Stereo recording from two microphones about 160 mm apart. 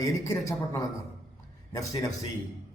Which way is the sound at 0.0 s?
20° left (ahead or behind).